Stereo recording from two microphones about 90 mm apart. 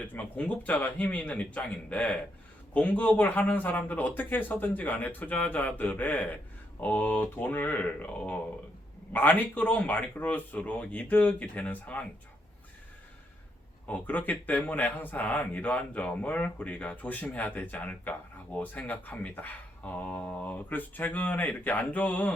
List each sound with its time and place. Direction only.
0.1 s speech: 15° left (ahead or behind)
13.8 s speech: 20° left (ahead or behind)